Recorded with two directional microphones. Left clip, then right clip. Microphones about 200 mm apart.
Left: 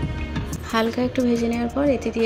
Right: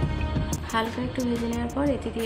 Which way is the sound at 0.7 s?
20° left (ahead or behind).